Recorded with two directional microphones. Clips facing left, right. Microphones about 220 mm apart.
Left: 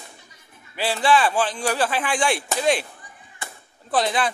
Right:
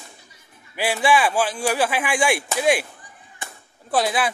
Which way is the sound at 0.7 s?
15° right (ahead or behind).